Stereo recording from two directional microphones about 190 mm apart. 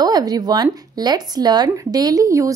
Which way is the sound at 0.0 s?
20° right (ahead or behind).